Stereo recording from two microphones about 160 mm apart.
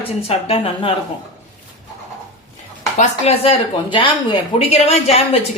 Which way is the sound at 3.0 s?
40° left (ahead or behind).